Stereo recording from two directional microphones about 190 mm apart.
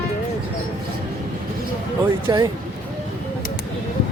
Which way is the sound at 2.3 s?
20° right (ahead or behind).